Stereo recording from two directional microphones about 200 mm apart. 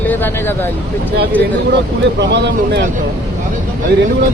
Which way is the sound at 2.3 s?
60° right (ahead or behind).